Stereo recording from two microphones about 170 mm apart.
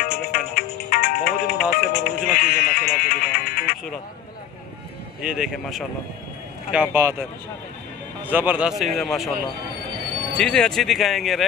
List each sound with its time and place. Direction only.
0.0 s music: 60° left (ahead or behind)
5.2 s speech: 5° right (ahead or behind)
8.3 s speech: 10° right (ahead or behind)
10.3 s speech: 5° left (ahead or behind)